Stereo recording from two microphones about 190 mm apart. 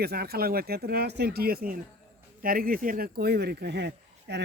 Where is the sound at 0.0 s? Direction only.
55° right (ahead or behind).